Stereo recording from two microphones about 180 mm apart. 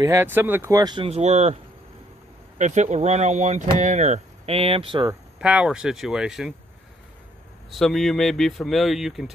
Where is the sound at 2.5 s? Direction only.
40° right (ahead or behind); by 5.1 s 25° right (ahead or behind).